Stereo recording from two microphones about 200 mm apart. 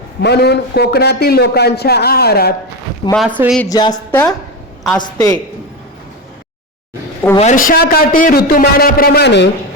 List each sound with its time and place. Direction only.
0.2 s a man's voice: 55° left (ahead or behind)
3.2 s speech: 10° right (ahead or behind)
3.7 s a woman's voice: 20° left (ahead or behind)
4.1 s a woman's voice: 10° left (ahead or behind)
7.3 s a man's voice: 40° left (ahead or behind); by 9.5 s 60° left (ahead or behind)